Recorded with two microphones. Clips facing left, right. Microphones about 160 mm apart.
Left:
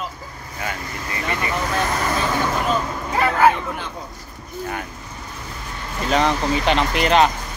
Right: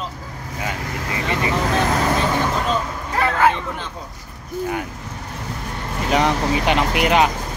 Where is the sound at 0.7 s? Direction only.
90° right.